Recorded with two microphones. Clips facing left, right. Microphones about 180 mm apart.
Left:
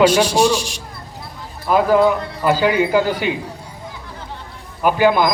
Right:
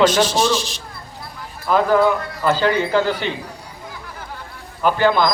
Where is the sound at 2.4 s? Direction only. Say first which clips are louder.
Left 2 dB; 10° left (ahead or behind).